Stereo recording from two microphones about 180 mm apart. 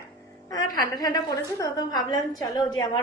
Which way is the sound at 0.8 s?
20° left (ahead or behind).